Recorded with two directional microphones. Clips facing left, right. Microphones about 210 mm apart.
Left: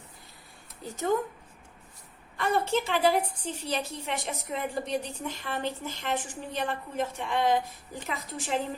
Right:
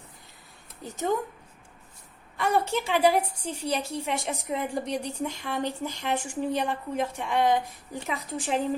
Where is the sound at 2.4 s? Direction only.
10° right (ahead or behind).